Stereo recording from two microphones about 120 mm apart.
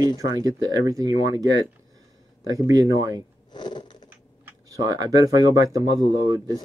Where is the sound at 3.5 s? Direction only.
40° left (ahead or behind).